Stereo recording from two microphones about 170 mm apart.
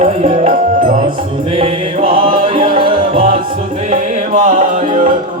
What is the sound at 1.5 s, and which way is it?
Music, 35° right (ahead or behind).